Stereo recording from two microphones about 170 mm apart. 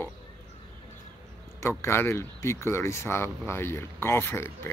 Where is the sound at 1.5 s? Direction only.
15° left (ahead or behind).